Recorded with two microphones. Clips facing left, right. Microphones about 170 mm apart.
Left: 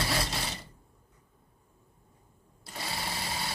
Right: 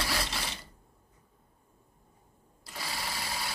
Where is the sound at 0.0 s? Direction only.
25° left (ahead or behind).